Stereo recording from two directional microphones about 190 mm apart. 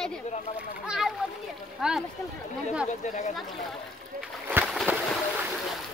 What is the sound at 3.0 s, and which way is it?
Speech, 40° left (ahead or behind).